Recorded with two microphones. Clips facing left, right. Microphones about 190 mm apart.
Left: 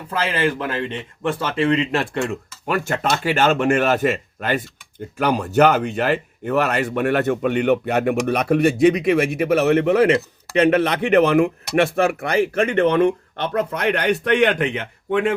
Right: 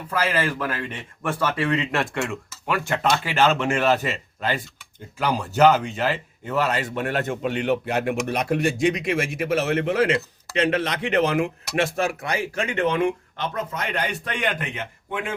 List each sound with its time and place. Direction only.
0.1 s speech: 25° left (ahead or behind)
2.6 s speech: 40° left (ahead or behind); by 15.4 s 65° left (ahead or behind)